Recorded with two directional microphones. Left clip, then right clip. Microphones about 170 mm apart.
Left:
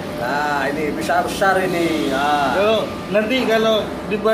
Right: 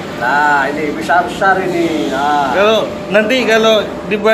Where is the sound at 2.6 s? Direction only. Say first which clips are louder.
Right 6 dB; 15° right (ahead or behind).